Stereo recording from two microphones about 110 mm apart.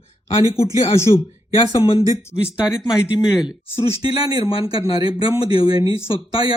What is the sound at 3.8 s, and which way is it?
Speech, 60° left (ahead or behind).